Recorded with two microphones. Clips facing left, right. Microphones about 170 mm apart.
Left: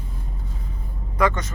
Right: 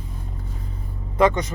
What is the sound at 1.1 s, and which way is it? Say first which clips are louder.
Speech: right 4 dB; 20° right (ahead or behind).